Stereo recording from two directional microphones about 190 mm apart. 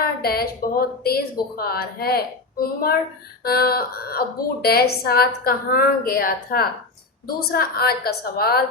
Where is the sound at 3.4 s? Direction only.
55° left (ahead or behind).